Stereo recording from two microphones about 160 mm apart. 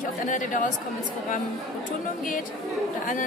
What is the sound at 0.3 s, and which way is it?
Speech, 55° left (ahead or behind).